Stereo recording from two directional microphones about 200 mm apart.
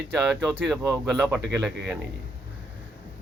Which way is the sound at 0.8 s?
Centre (ahead or behind).